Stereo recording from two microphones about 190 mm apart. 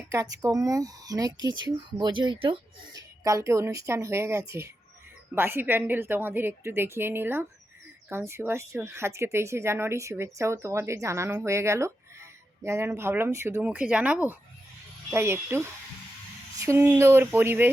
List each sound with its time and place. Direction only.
0.1 s speech: 15° right (ahead or behind)
16.6 s speech: 10° right (ahead or behind)